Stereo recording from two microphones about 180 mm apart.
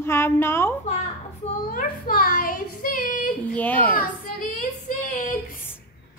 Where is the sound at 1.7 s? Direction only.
50° left (ahead or behind).